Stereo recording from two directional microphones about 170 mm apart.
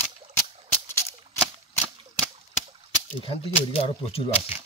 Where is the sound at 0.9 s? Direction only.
15° left (ahead or behind).